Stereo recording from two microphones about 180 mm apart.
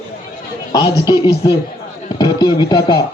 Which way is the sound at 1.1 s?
25° left (ahead or behind).